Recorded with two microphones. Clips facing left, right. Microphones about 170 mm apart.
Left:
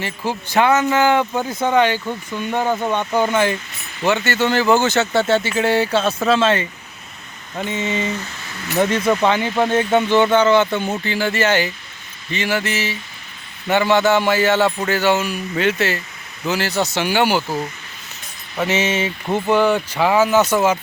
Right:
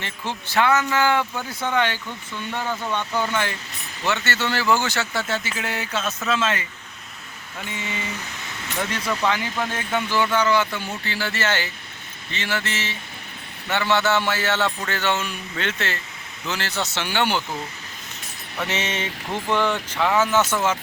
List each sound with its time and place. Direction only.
0.3 s speech: 15° left (ahead or behind)
2.6 s speech: 40° left (ahead or behind)
3.2 s speech: 20° left (ahead or behind)
7.7 s speech: 25° left (ahead or behind)
8.1 s a sound: 15° right (ahead or behind)
8.8 s speech: 25° left (ahead or behind)
18.6 s speech: 5° left (ahead or behind)